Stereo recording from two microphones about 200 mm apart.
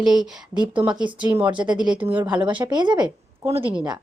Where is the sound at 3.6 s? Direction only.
5° right (ahead or behind).